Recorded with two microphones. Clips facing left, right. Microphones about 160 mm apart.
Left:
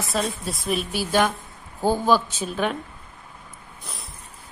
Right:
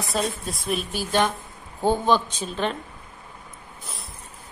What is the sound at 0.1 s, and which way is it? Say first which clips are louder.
A woman's voice: even; centre (ahead or behind).